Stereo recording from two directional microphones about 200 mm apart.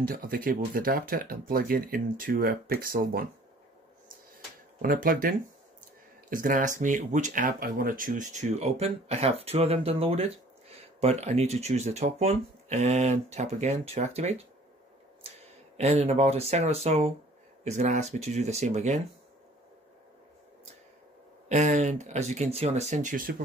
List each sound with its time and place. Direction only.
0.0 s speech: 45° right (ahead or behind)
4.8 s speech: 45° right (ahead or behind)
6.3 s speech: 40° right (ahead or behind)
15.8 s speech: 30° right (ahead or behind)
21.5 s speech: 35° right (ahead or behind)